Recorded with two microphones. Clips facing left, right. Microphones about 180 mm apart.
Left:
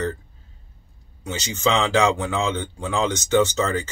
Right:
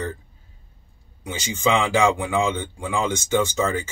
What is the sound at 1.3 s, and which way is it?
A man's voice, 10° right (ahead or behind).